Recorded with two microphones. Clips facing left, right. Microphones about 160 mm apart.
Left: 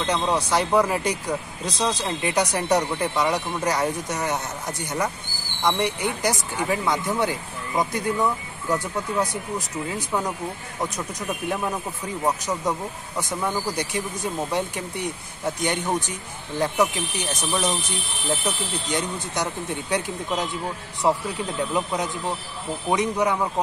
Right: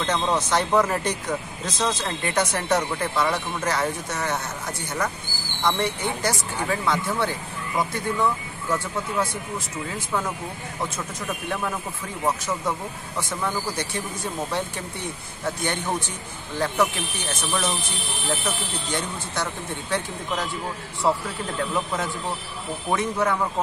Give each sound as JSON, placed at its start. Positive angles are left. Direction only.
{"t": 0.0, "sound": "speech", "side_deg": 10}
{"t": 15.4, "sound": "speech", "side_deg": 15}
{"t": 19.1, "sound": "speech", "side_deg": 20}